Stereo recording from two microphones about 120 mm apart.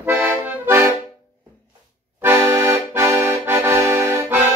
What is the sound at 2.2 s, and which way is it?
Accordion, 20° right (ahead or behind).